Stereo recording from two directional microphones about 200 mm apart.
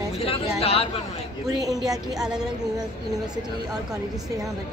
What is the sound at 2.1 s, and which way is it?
Speech, 5° right (ahead or behind).